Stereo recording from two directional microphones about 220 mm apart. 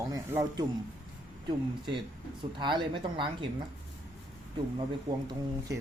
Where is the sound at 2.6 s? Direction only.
20° right (ahead or behind).